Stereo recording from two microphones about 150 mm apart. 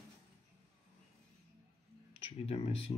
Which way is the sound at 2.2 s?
40° left (ahead or behind).